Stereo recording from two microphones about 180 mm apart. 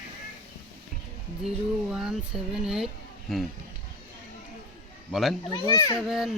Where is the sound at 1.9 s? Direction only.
5° right (ahead or behind).